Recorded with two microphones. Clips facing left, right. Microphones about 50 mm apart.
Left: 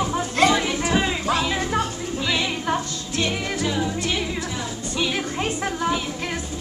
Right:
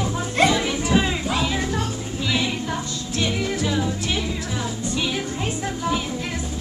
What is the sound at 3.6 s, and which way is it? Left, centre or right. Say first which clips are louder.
Music: left 1 dB; centre.